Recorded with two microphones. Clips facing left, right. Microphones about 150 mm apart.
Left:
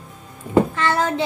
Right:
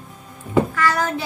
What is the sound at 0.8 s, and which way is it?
Speech, 25° left (ahead or behind).